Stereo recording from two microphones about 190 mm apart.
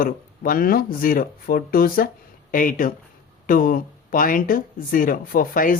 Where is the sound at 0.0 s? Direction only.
50° left (ahead or behind).